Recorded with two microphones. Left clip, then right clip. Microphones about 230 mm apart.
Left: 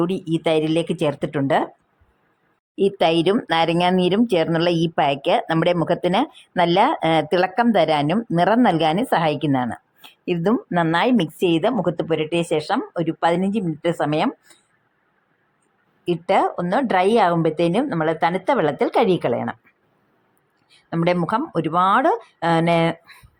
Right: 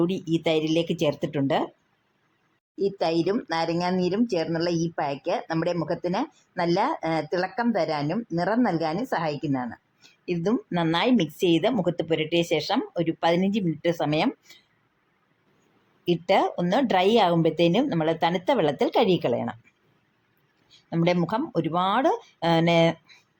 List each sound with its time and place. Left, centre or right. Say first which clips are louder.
0.0 s speech: left 3 dB; centre
2.7 s speech: left 7 dB; left
16.0 s speech: left 3 dB; centre
20.7 s speech: left 4 dB; centre